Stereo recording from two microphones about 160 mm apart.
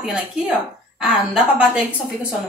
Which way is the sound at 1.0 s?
5° right (ahead or behind).